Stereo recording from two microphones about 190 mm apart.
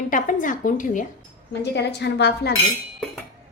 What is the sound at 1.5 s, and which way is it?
A woman's voice, 65° left (ahead or behind).